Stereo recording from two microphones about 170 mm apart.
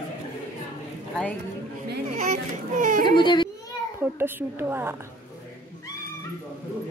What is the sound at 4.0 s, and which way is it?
Speech, 15° right (ahead or behind).